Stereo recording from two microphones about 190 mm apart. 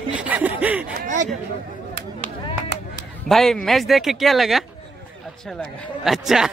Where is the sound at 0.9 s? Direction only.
40° right (ahead or behind).